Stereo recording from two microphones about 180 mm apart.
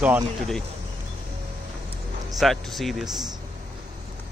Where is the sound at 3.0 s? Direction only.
20° right (ahead or behind).